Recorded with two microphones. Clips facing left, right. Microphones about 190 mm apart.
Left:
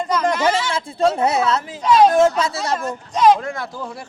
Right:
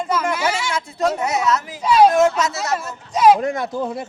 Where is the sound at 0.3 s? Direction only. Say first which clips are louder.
Left 4 dB; 10° right (ahead or behind).